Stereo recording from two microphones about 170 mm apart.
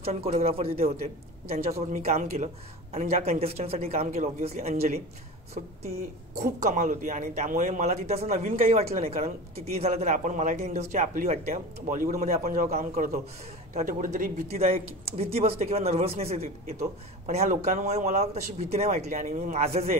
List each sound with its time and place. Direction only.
0.0 s a man's voice: 35° right (ahead or behind); by 12.7 s 55° right (ahead or behind)
12.7 s a man's voice: 40° right (ahead or behind)
14.5 s a man's voice: 35° right (ahead or behind)